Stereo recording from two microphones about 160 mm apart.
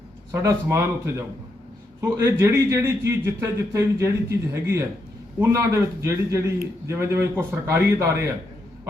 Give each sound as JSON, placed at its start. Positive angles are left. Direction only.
{"t": 0.3, "sound": "a man's voice", "side_deg": -15}